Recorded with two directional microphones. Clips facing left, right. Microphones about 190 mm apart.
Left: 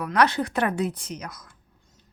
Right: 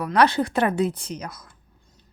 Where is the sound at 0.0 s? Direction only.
30° right (ahead or behind).